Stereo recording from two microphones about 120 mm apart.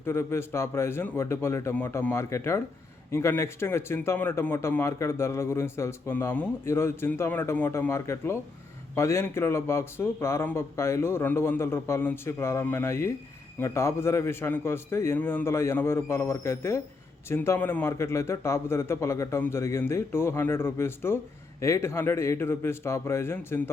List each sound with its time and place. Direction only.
0.0 s a man's voice: 20° left (ahead or behind)